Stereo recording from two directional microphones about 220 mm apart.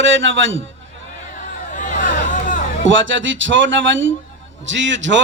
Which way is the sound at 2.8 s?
55° right (ahead or behind).